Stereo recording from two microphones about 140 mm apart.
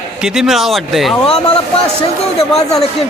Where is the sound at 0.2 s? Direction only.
5° right (ahead or behind).